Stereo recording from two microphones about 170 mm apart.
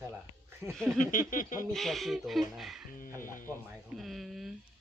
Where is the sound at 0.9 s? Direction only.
50° left (ahead or behind).